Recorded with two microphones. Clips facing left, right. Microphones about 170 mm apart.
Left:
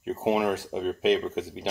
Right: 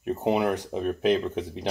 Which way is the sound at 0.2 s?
5° left (ahead or behind).